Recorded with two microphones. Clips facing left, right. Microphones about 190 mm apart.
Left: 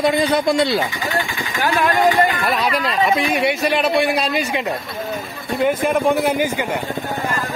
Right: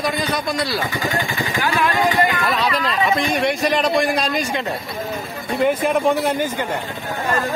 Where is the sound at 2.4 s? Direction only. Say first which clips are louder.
Left 1 dB; 10° left (ahead or behind).